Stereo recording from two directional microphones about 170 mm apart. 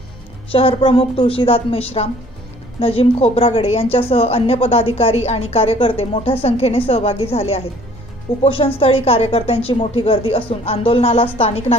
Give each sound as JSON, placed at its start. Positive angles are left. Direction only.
{"t": 0.5, "sound": "a woman's voice", "side_deg": 35}